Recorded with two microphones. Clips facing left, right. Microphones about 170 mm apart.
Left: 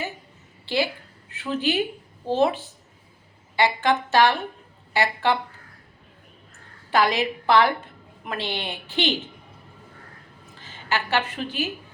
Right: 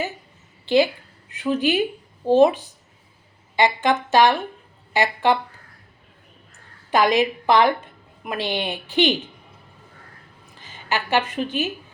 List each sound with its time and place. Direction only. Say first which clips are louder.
0.6 s a sound: right 7 dB; 20° right (ahead or behind)
1.3 s a woman's voice: right 4 dB; 15° right (ahead or behind)
6.9 s a woman's voice: right 3 dB; 15° right (ahead or behind)
10.6 s a woman's voice: right 1 dB; 15° right (ahead or behind)